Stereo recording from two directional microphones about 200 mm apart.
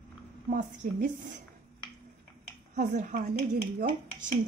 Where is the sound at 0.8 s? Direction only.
40° right (ahead or behind).